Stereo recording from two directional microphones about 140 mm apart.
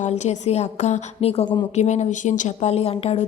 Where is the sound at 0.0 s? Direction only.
55° left (ahead or behind).